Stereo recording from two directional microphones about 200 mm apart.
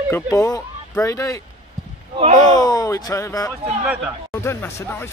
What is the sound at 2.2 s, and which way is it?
Speech, 35° right (ahead or behind).